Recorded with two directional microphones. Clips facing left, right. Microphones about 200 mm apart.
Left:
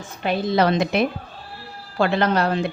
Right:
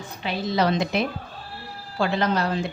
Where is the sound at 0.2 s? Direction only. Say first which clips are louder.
Left 4 dB; 55° left (ahead or behind).